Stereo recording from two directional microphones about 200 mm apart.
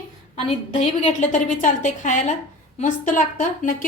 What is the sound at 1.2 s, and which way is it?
A woman's voice, 40° left (ahead or behind).